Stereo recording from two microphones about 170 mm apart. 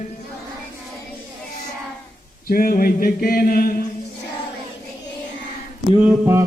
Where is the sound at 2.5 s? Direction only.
55° left (ahead or behind).